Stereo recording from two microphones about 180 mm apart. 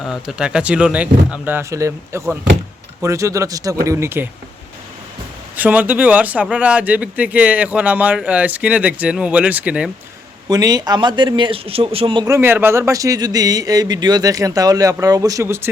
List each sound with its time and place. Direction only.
0.0 s speech: centre (ahead or behind)
5.5 s speech: 10° right (ahead or behind)
10.5 s speech: 20° right (ahead or behind)